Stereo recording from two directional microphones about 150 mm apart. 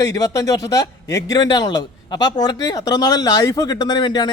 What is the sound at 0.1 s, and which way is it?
A man's voice, 25° left (ahead or behind).